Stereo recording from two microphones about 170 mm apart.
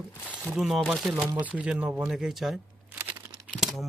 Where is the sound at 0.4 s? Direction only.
Centre (ahead or behind).